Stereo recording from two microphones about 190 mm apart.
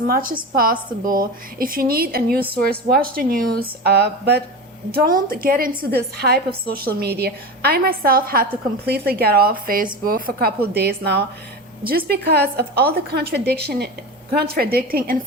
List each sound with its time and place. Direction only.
0.1 s a woman's voice: 50° right (ahead or behind)